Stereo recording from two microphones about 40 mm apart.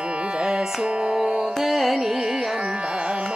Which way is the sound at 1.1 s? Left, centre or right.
Centre.